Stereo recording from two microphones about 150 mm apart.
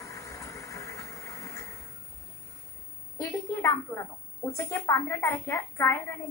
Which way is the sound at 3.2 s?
20° left (ahead or behind).